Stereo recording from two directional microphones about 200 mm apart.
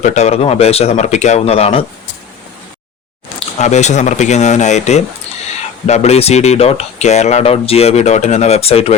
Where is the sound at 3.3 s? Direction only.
35° left (ahead or behind).